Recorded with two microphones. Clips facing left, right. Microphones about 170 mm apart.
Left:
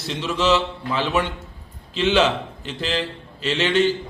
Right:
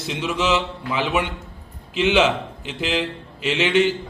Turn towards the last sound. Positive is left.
turn(degrees=-15)  # may be behind; listen again after turning